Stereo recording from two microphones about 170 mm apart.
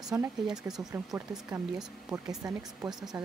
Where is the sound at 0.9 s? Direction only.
20° right (ahead or behind).